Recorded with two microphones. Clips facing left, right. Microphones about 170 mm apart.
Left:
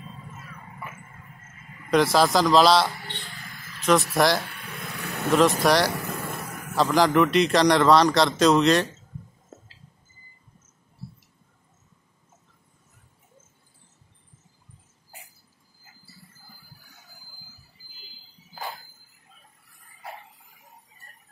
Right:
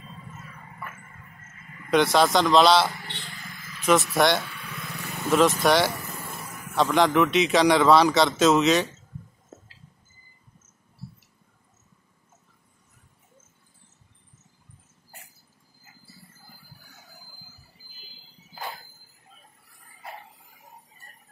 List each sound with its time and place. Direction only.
1.9 s a man's voice: centre (ahead or behind)
6.0 s vehicle: 65° left (ahead or behind)
6.7 s a man's voice: centre (ahead or behind)